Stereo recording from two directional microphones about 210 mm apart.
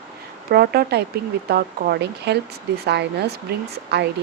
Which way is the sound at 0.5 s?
50° right (ahead or behind).